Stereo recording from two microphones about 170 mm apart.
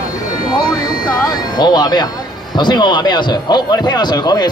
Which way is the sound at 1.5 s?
25° left (ahead or behind).